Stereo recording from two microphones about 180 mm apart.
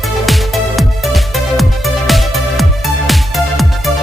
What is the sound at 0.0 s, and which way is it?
Music, centre (ahead or behind).